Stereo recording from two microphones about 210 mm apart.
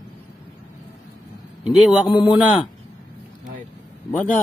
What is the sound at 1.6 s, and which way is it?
Speech, centre (ahead or behind).